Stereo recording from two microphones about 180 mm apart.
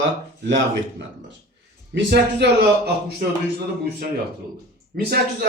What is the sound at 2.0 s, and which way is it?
A man's voice, 65° right (ahead or behind).